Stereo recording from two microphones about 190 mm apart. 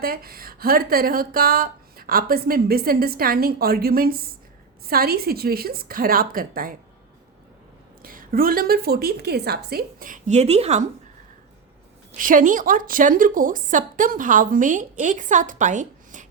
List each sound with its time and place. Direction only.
0.0 s speech: 50° right (ahead or behind)
8.0 s speech: 50° right (ahead or behind)
12.1 s speech: 45° right (ahead or behind)